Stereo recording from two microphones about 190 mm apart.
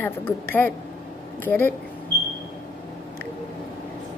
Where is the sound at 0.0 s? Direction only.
10° left (ahead or behind).